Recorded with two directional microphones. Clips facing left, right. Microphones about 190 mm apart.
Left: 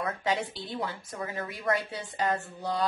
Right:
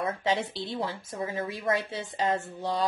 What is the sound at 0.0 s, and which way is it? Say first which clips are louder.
Speech: right 2 dB; 25° right (ahead or behind).